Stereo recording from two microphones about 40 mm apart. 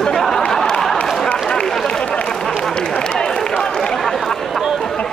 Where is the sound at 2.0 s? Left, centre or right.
Left.